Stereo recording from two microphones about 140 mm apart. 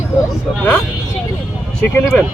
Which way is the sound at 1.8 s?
15° left (ahead or behind).